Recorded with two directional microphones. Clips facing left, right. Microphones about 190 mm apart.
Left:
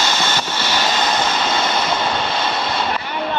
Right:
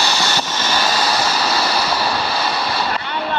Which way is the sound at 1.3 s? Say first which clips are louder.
Even; 25° left (ahead or behind).